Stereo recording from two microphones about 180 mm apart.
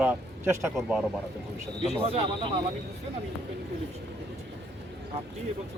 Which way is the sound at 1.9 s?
30° right (ahead or behind).